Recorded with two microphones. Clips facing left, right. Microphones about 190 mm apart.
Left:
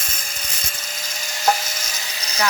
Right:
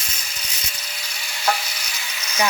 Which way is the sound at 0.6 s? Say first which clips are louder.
Left 3 dB; 45° left (ahead or behind).